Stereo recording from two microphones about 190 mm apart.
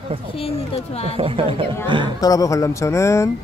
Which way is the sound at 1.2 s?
30° right (ahead or behind).